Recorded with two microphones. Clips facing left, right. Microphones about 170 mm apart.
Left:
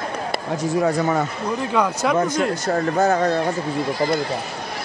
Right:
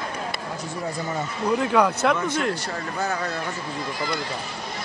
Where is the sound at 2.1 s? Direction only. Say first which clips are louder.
Left 5 dB; 40° left (ahead or behind).